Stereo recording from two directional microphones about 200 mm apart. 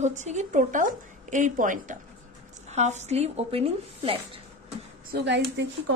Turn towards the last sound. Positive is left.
turn(degrees=-60)  # may be behind; listen again after turning